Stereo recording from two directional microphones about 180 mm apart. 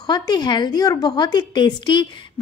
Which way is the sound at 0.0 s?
25° left (ahead or behind).